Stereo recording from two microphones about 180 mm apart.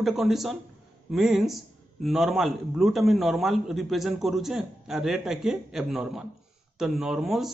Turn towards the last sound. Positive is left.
turn(degrees=0)  # may be behind; listen again after turning